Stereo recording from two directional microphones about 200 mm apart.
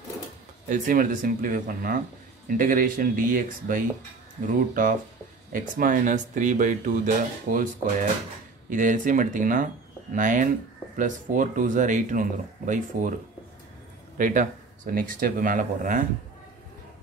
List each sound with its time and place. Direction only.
0.7 s speech: 40° right (ahead or behind)
5.5 s speech: 40° right (ahead or behind)
14.1 s speech: 40° right (ahead or behind)